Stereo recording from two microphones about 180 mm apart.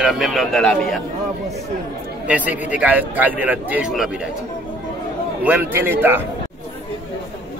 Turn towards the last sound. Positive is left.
turn(degrees=-10)  # may be behind; listen again after turning